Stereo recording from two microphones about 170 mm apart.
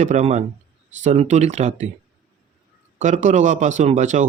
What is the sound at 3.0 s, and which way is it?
Speech, 45° right (ahead or behind).